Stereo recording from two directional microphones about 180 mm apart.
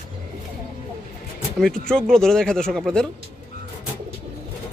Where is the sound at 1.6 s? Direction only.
5° left (ahead or behind).